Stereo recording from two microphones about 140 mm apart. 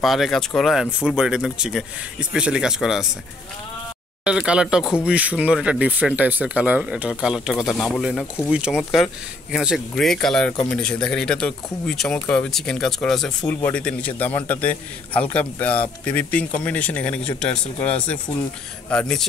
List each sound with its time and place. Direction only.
0.0 s speech: centre (ahead or behind)
4.2 s speech: 5° right (ahead or behind)
13.5 s a man's voice: 15° left (ahead or behind)